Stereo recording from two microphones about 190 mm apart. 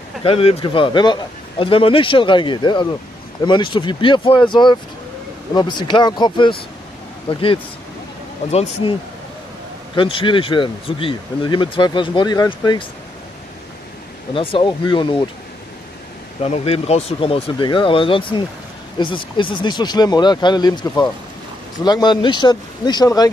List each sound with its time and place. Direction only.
0.2 s speech: 30° left (ahead or behind)
9.9 s speech: 25° left (ahead or behind)
14.3 s speech: 30° left (ahead or behind)
16.4 s speech: 30° left (ahead or behind)